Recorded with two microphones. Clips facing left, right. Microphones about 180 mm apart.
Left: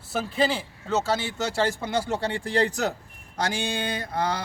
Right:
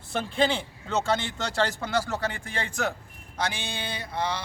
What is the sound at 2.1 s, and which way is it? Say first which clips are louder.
Speech: left 5 dB; 30° left (ahead or behind).